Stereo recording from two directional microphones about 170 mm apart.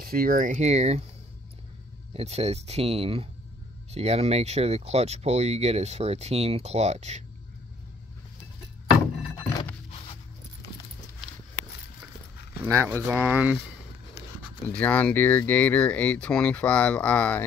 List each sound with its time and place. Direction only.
0.0 s speech: 60° right (ahead or behind); by 1.0 s 40° right (ahead or behind)
2.1 s speech: 40° right (ahead or behind)
12.7 s speech: 15° right (ahead or behind)
14.4 s speech: 10° left (ahead or behind)